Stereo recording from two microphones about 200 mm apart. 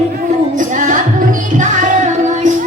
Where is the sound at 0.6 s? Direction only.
40° right (ahead or behind).